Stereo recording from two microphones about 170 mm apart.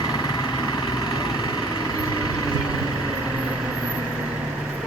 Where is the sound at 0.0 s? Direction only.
25° left (ahead or behind).